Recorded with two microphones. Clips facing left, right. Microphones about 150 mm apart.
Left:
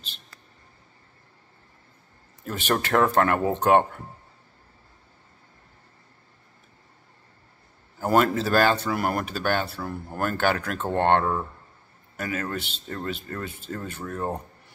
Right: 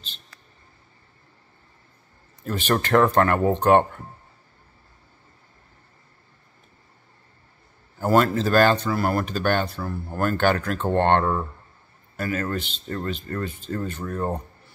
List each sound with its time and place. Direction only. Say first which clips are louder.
2.4 s speech: right 2 dB; 10° left (ahead or behind)
8.1 s speech: right 2 dB; 10° left (ahead or behind)